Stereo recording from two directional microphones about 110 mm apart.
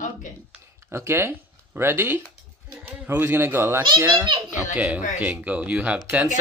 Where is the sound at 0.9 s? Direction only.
25° right (ahead or behind).